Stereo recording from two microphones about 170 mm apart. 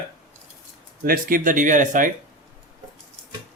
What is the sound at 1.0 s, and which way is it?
Speech, 60° right (ahead or behind).